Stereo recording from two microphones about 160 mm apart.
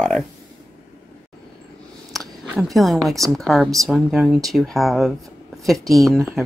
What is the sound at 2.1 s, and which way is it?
Speech, centre (ahead or behind).